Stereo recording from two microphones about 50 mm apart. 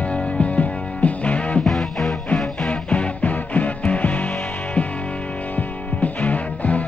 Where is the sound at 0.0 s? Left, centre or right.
Left.